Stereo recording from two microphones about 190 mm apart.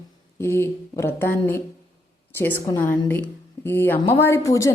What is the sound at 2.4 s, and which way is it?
A woman's voice, 10° left (ahead or behind).